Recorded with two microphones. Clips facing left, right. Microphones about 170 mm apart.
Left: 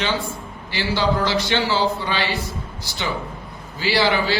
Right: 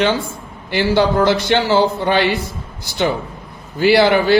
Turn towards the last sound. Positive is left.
turn(degrees=-55)  # may be behind; listen again after turning